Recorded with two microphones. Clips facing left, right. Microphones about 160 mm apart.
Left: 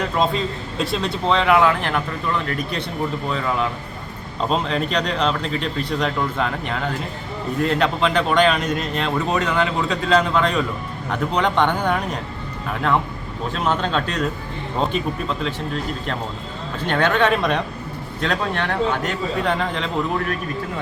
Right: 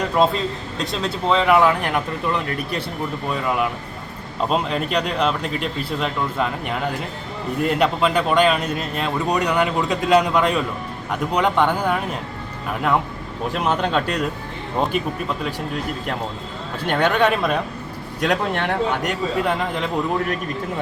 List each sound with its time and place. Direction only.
0.2 s a man's voice: centre (ahead or behind)
13.5 s a man's voice: 15° right (ahead or behind)
16.8 s a man's voice: 10° right (ahead or behind)